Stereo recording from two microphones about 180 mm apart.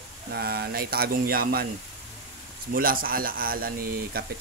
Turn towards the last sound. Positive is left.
turn(degrees=-55)  # may be behind; listen again after turning